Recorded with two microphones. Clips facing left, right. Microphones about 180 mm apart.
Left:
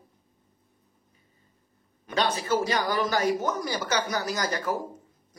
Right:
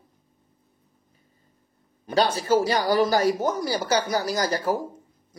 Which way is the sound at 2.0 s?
35° right (ahead or behind).